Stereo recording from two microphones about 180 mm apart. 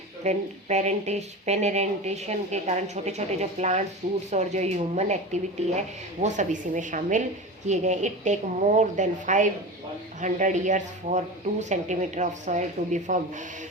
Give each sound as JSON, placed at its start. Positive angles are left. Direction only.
{"t": 0.3, "sound": "a woman's voice", "side_deg": -40}